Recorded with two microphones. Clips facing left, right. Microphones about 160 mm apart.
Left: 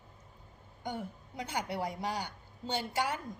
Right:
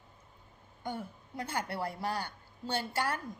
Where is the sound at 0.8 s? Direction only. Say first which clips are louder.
Even; 15° left (ahead or behind).